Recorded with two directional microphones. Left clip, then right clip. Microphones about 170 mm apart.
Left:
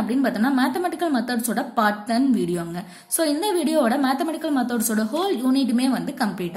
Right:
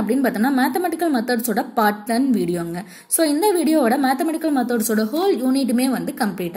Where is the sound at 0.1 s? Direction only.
20° right (ahead or behind).